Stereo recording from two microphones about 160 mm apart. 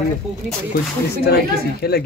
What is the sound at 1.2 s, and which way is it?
Speech, 85° left.